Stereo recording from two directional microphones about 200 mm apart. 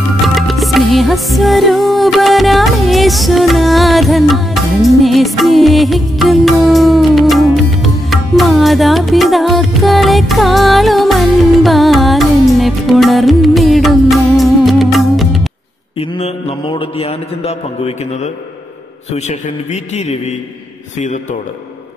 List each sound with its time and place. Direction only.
0.4 s music: centre (ahead or behind)
16.0 s mantra: 30° left (ahead or behind)
19.1 s a man's voice: 35° left (ahead or behind)